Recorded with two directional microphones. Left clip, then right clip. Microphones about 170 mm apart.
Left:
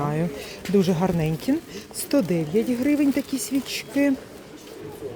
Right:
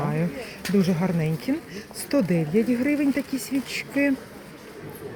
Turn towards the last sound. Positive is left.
turn(degrees=15)  # may be behind; listen again after turning